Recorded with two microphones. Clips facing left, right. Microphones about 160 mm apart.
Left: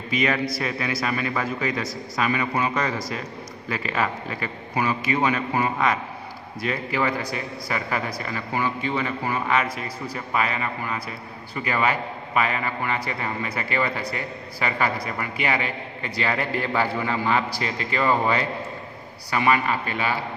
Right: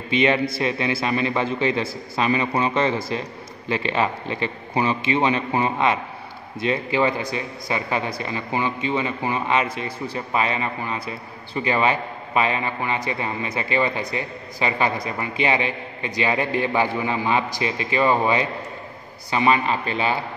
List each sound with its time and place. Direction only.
0.1 s a man's voice: 25° right (ahead or behind)